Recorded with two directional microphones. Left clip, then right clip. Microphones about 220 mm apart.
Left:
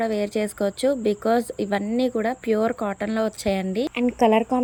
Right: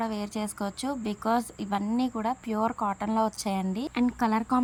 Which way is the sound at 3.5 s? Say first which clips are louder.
Left 6 dB; 40° right (ahead or behind).